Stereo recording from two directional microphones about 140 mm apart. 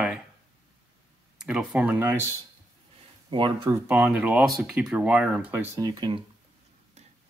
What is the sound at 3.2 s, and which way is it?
Speech, 35° right (ahead or behind).